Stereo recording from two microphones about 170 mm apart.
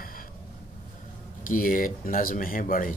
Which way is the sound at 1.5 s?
55° left (ahead or behind).